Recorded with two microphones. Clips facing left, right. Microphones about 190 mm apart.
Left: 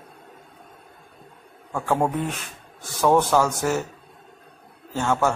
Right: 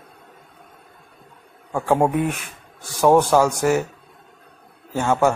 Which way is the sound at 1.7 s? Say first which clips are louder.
Right 4 dB; 15° right (ahead or behind).